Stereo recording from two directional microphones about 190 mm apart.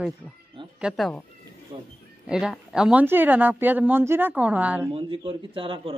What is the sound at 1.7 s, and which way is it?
Speech, 25° right (ahead or behind).